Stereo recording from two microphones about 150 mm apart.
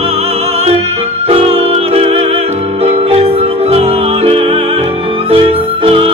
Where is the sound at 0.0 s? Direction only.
40° right (ahead or behind).